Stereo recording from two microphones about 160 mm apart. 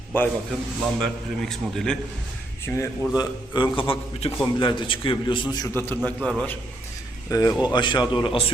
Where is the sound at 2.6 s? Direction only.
15° left (ahead or behind).